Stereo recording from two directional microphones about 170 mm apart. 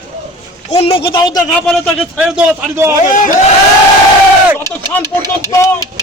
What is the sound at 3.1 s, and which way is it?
Speech, 50° left (ahead or behind).